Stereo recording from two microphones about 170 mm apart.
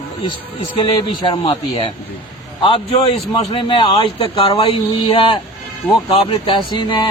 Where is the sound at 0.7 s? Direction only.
30° left (ahead or behind).